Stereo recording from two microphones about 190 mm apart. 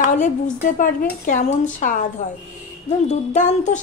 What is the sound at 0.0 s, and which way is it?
A woman's voice, 40° left (ahead or behind).